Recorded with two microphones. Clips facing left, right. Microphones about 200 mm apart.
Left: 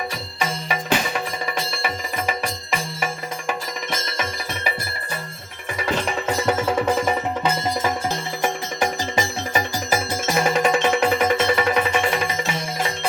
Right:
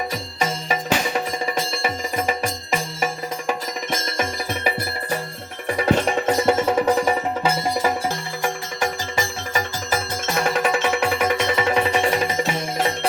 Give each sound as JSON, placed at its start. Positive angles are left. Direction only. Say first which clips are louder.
{"t": 0.3, "sound": "music", "louder": "right 2 dB", "side_deg": -40}
{"t": 6.4, "sound": "music", "louder": "right 2 dB", "side_deg": -30}
{"t": 6.8, "sound": "music", "louder": "right 2 dB", "side_deg": -10}
{"t": 8.1, "sound": "music", "louder": "left 1 dB", "side_deg": 20}
{"t": 10.2, "sound": "music", "louder": "left 2 dB", "side_deg": 5}